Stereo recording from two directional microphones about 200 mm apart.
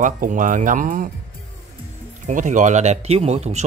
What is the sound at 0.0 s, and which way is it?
Speech, 40° right (ahead or behind).